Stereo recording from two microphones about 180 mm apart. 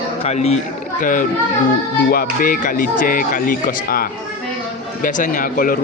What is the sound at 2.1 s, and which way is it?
Speech, 55° left (ahead or behind).